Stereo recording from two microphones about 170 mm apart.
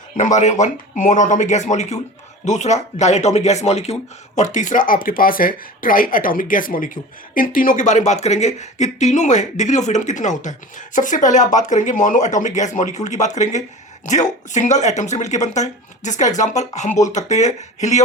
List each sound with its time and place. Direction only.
0.2 s speech: 45° left (ahead or behind)